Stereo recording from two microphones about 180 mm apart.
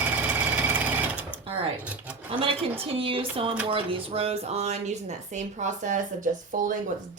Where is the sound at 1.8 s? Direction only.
5° right (ahead or behind).